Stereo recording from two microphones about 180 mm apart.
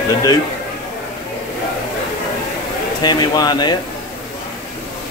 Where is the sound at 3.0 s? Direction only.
20° left (ahead or behind).